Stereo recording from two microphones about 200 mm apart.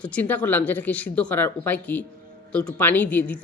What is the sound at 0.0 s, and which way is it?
A woman's voice, 5° left (ahead or behind).